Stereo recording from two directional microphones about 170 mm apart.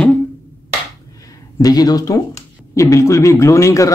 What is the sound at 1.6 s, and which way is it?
Speech, 20° left (ahead or behind).